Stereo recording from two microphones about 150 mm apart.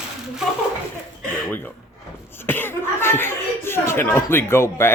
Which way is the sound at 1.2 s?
10° left (ahead or behind).